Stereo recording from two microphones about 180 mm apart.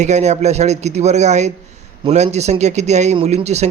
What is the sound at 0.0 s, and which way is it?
A man's voice, 40° right (ahead or behind).